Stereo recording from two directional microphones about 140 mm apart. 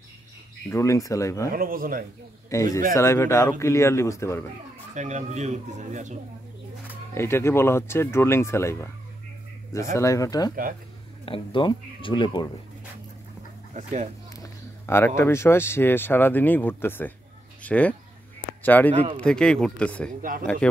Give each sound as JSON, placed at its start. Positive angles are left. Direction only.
{"t": 0.7, "sound": "a man's voice", "side_deg": 20}
{"t": 1.5, "sound": "speech", "side_deg": -90}
{"t": 2.5, "sound": "a man's voice", "side_deg": 25}
{"t": 4.9, "sound": "speech", "side_deg": -55}
{"t": 7.2, "sound": "speech", "side_deg": 20}
{"t": 9.9, "sound": "a man's voice", "side_deg": 20}
{"t": 11.2, "sound": "speech", "side_deg": 40}
{"t": 14.3, "sound": "speech", "side_deg": 20}
{"t": 20.1, "sound": "speech", "side_deg": -75}